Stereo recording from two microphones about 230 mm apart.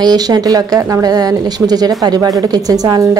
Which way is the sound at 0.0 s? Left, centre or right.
Centre.